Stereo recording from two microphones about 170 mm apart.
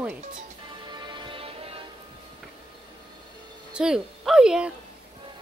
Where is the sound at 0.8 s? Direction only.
25° right (ahead or behind).